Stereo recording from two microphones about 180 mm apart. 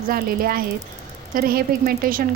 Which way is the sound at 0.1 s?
55° right (ahead or behind).